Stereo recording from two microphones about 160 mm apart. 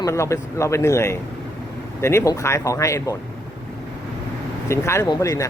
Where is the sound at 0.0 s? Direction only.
20° left (ahead or behind).